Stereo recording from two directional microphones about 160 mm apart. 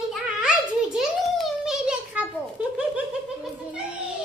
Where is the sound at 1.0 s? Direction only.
Centre (ahead or behind).